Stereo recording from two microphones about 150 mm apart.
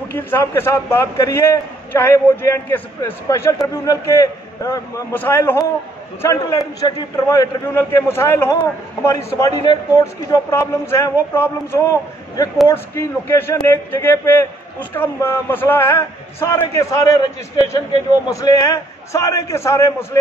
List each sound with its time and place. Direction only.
0.1 s a man's voice: 15° left (ahead or behind)
6.8 s a man's voice: 25° left (ahead or behind)
18.3 s a man's voice: 25° left (ahead or behind)